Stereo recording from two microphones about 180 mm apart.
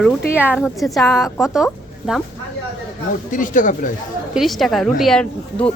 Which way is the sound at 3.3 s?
45° left (ahead or behind).